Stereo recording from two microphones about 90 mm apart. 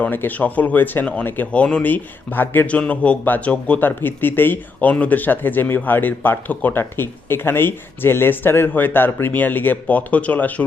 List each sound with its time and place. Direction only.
0.0 s speech: 20° left (ahead or behind)